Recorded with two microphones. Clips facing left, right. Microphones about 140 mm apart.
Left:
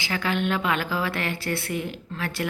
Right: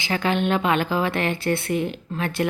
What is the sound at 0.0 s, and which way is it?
A woman's voice, 20° right (ahead or behind).